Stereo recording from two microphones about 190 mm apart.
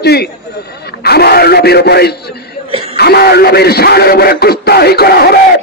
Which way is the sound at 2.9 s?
55° left (ahead or behind).